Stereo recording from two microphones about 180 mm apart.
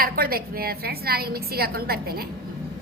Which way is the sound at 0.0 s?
55° right (ahead or behind).